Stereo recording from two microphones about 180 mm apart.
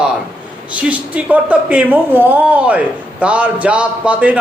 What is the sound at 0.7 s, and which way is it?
A woman's voice, 5° right (ahead or behind).